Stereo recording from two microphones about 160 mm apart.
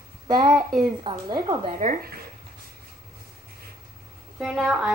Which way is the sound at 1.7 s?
55° right (ahead or behind).